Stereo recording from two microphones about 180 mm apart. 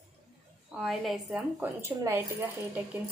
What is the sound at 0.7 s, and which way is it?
A woman's voice, centre (ahead or behind).